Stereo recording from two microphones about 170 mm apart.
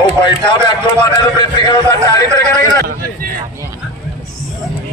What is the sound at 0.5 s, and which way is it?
A man's voice, 25° left (ahead or behind).